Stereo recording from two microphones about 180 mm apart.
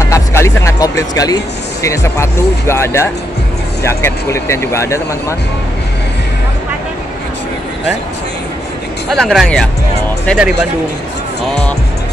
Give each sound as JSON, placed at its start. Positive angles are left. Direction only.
{"t": 0.1, "sound": "speech", "side_deg": 15}
{"t": 9.1, "sound": "speech", "side_deg": 0}